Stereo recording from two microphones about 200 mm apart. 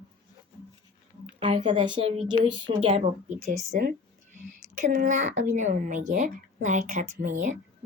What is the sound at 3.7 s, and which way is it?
A woman's voice, 45° right (ahead or behind).